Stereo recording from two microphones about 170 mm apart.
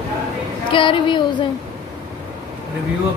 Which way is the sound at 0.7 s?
30° left (ahead or behind).